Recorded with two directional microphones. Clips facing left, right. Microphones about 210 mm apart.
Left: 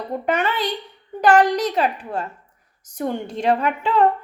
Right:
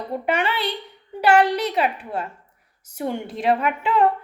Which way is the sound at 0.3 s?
10° right (ahead or behind).